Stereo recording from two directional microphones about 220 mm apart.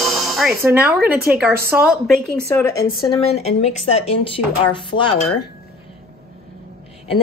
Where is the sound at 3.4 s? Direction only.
30° left (ahead or behind).